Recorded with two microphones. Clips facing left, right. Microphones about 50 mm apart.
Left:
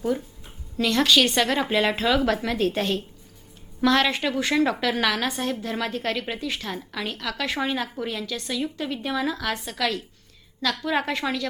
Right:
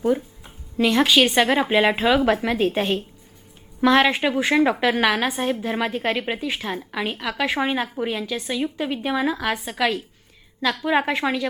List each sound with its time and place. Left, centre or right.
0.8 s a woman's voice: centre